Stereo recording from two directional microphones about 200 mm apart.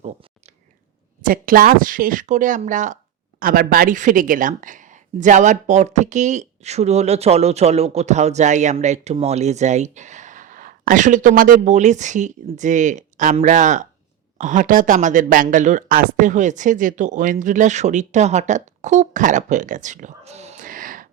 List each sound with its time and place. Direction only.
1.2 s a woman's voice: 45° right (ahead or behind)